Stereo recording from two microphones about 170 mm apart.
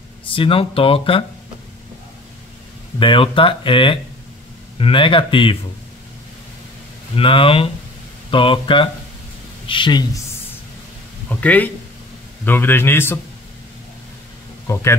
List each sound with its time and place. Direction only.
0.3 s speech: 30° left (ahead or behind)
3.0 s speech: 30° left (ahead or behind)
7.2 s speech: 30° left (ahead or behind)
11.2 s a man's voice: 10° left (ahead or behind)
14.7 s a man's voice: 15° left (ahead or behind)